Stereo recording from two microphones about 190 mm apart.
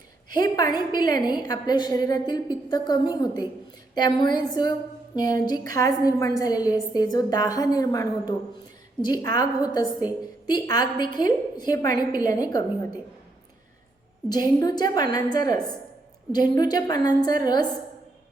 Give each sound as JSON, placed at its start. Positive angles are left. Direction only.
{"t": 0.3, "sound": "a woman's voice", "side_deg": 20}
{"t": 14.3, "sound": "a woman's voice", "side_deg": 20}